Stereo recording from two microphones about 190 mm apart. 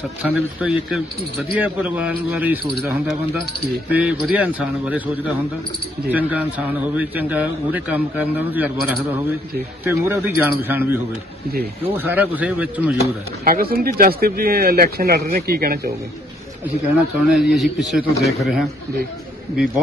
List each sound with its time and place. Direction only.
0.2 s a man's voice: 5° right (ahead or behind)
13.4 s speech: 50° right (ahead or behind)
16.6 s a man's voice: 5° right (ahead or behind)